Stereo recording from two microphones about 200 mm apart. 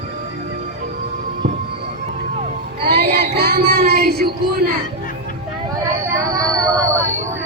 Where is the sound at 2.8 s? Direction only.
50° right (ahead or behind).